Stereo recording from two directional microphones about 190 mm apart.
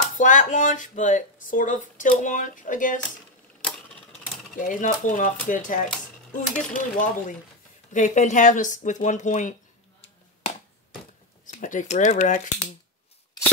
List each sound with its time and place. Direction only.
0.2 s speech: 40° left (ahead or behind)
4.6 s speech: 45° left (ahead or behind)
11.4 s speech: 40° left (ahead or behind)